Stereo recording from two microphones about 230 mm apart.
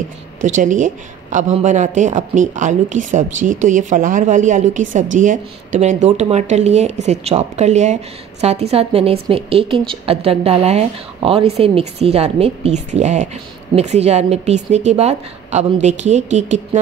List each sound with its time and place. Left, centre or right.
0.6 s speech: right